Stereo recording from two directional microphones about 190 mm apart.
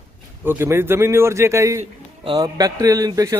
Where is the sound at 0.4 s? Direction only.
10° right (ahead or behind).